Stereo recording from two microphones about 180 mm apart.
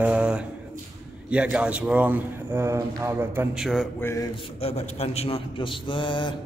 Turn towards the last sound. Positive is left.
turn(degrees=25)  # may be behind; listen again after turning